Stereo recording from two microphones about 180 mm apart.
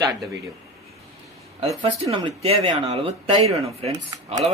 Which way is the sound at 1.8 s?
30° right (ahead or behind).